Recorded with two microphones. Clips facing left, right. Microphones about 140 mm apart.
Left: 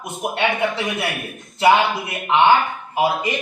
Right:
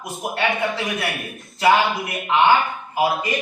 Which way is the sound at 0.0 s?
20° left (ahead or behind).